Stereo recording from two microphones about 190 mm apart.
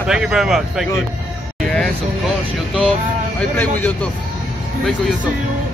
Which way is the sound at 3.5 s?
10° left (ahead or behind).